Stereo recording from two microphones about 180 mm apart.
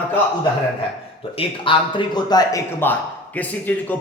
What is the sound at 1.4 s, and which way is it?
A man's voice, 30° left (ahead or behind).